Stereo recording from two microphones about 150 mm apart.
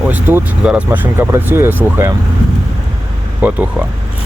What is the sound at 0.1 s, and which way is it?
Speech, 10° right (ahead or behind).